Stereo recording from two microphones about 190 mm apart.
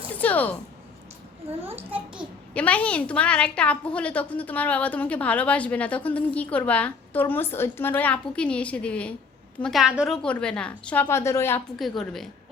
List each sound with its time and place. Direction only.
0.2 s speech: 10° left (ahead or behind)
1.5 s a child's voice: 30° right (ahead or behind)
2.5 s a woman's voice: 5° left (ahead or behind)
11.8 s a woman's voice: centre (ahead or behind)